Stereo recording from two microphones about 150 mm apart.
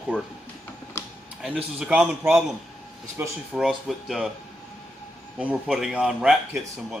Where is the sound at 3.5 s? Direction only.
Centre (ahead or behind).